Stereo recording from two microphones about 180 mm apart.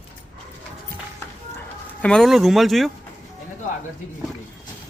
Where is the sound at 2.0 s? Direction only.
5° left (ahead or behind).